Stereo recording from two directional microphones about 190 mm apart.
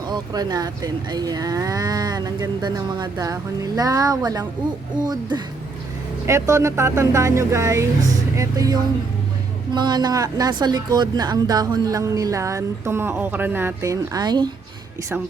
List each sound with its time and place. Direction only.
0.1 s a woman's voice: 20° right (ahead or behind)
6.2 s a woman's voice: 15° right (ahead or behind)